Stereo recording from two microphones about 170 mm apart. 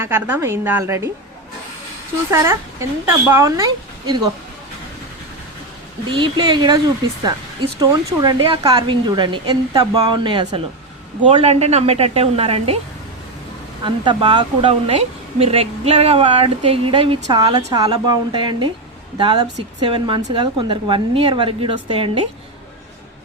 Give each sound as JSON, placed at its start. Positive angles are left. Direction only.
{"t": 0.0, "sound": "a woman's voice", "side_deg": -15}
{"t": 2.3, "sound": "a woman's voice", "side_deg": -15}
{"t": 6.1, "sound": "a woman's voice", "side_deg": -30}
{"t": 13.8, "sound": "a woman's voice", "side_deg": -30}